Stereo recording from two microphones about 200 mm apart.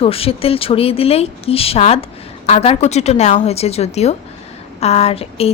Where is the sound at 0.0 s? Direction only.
30° left (ahead or behind).